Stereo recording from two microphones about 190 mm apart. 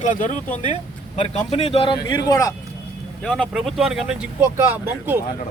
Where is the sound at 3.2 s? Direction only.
5° left (ahead or behind).